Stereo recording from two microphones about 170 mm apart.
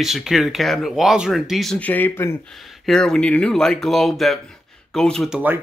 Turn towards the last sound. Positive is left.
turn(degrees=5)  # may be behind; listen again after turning